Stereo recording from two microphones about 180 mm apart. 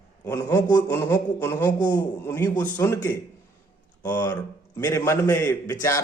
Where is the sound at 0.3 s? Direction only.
20° left (ahead or behind).